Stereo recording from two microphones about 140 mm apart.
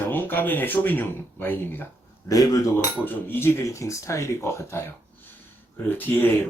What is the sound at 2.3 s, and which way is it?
Speech, 25° left (ahead or behind).